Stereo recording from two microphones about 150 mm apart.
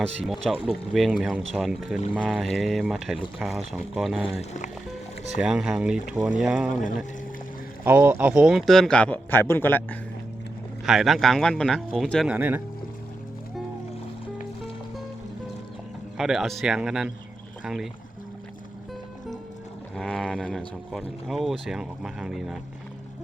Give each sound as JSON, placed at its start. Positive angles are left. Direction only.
{"t": 0.2, "sound": "speech", "side_deg": 0}
{"t": 4.4, "sound": "speech", "side_deg": 55}
{"t": 5.4, "sound": "speech", "side_deg": -5}
{"t": 7.9, "sound": "speech", "side_deg": -15}
{"t": 10.8, "sound": "speech", "side_deg": 0}
{"t": 12.3, "sound": "speech", "side_deg": -10}
{"t": 16.1, "sound": "speech", "side_deg": -5}
{"t": 20.0, "sound": "speech", "side_deg": 5}